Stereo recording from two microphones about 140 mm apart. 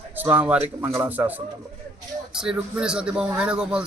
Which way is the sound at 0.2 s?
10° right (ahead or behind).